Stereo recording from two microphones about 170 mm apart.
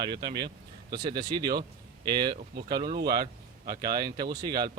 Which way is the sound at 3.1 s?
25° right (ahead or behind).